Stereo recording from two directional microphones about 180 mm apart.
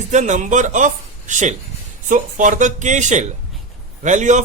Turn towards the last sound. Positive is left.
turn(degrees=-40)  # may be behind; listen again after turning